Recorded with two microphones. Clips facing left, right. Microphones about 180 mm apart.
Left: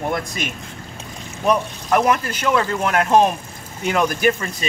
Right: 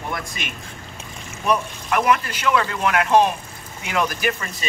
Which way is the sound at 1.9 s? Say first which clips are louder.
Left 2 dB; 40° left (ahead or behind).